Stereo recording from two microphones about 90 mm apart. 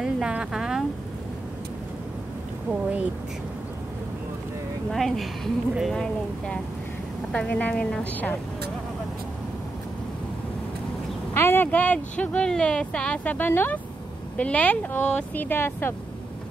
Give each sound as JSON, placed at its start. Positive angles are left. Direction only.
{"t": 0.0, "sound": "a sound", "side_deg": -10}
{"t": 2.7, "sound": "speech", "side_deg": -15}
{"t": 4.9, "sound": "speech", "side_deg": 0}
{"t": 11.3, "sound": "speech", "side_deg": 25}